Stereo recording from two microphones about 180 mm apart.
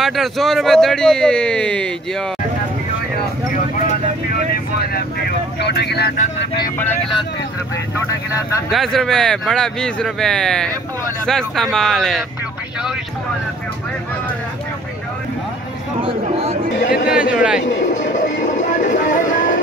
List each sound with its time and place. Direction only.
0.0 s speech: centre (ahead or behind)
5.6 s speech: 65° left (ahead or behind)
8.7 s speech: centre (ahead or behind)
16.0 s a sound: 30° right (ahead or behind)
16.7 s speech: 80° left
17.3 s speech: 5° right (ahead or behind)
18.0 s music: 45° left (ahead or behind)
18.4 s vehicle: 45° left (ahead or behind)